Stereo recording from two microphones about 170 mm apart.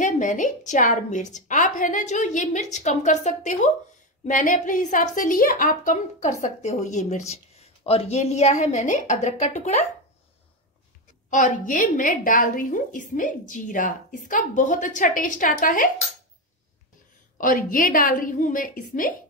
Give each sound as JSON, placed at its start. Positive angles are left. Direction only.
{"t": 0.0, "sound": "a woman's voice", "side_deg": 50}
{"t": 11.2, "sound": "a woman's voice", "side_deg": 45}
{"t": 17.4, "sound": "a woman's voice", "side_deg": 55}